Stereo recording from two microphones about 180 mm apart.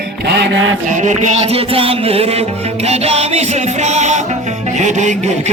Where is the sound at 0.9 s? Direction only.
45° right (ahead or behind).